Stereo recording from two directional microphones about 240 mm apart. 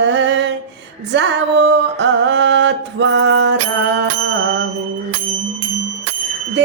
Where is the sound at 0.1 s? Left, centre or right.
Right.